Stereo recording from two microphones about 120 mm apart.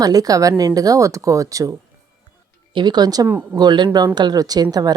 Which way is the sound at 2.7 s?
35° right (ahead or behind).